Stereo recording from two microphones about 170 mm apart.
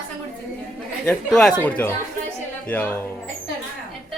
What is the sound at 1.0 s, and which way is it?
A man's voice, 5° left (ahead or behind).